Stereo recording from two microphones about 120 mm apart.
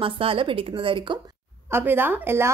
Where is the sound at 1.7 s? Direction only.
20° right (ahead or behind).